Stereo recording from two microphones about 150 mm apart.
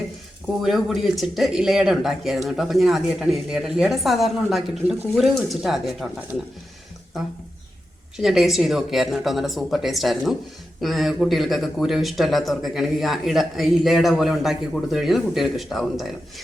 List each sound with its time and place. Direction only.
0.6 s speech: centre (ahead or behind)
8.1 s speech: centre (ahead or behind)